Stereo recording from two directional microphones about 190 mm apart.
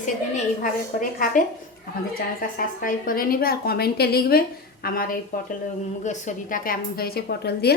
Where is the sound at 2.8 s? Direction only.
50° left (ahead or behind).